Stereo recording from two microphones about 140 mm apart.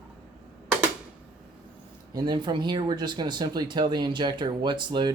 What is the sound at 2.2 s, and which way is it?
Speech, 30° right (ahead or behind).